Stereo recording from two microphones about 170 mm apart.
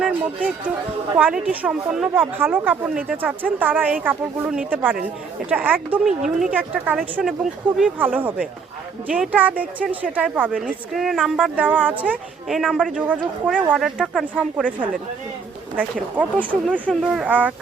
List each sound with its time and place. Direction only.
1.1 s a woman's voice: 5° right (ahead or behind)
16.1 s a woman's voice: 10° right (ahead or behind)